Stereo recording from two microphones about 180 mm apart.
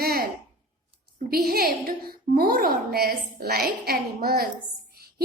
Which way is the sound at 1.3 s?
55° right (ahead or behind).